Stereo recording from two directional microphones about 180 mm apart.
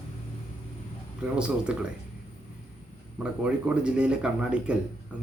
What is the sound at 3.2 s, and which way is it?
Speech, 5° right (ahead or behind).